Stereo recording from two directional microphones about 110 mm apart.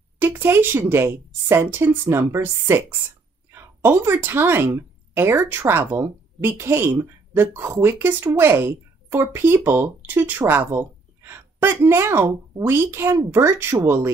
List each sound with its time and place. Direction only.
0.2 s a woman's voice: 20° right (ahead or behind)